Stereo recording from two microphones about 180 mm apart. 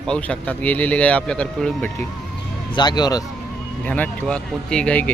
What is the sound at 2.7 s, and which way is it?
Speech, 25° left (ahead or behind).